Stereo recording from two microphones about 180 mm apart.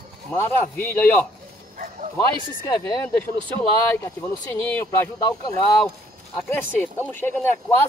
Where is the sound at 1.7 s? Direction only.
50° right (ahead or behind).